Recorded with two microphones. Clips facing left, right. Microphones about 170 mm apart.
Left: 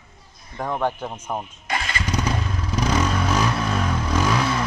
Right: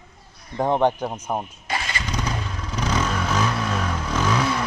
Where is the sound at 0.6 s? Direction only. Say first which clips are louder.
Right 5 dB; 25° right (ahead or behind).